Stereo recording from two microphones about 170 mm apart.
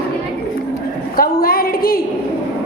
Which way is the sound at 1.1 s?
60° left (ahead or behind).